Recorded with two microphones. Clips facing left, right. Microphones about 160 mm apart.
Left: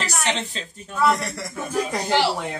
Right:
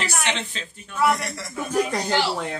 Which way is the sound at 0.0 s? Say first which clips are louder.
Left 1 dB; 40° left (ahead or behind).